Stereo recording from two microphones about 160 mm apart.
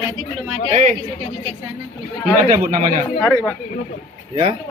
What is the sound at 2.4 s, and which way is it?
Speech, 60° right (ahead or behind).